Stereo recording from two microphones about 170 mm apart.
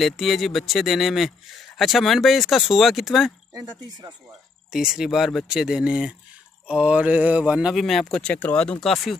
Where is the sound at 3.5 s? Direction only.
25° right (ahead or behind).